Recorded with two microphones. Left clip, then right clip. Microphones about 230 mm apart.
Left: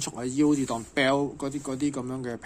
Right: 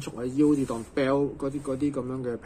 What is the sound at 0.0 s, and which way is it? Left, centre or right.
Speech, left.